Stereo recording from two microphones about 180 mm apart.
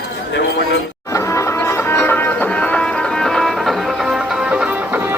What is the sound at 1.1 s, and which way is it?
Music, 15° left (ahead or behind).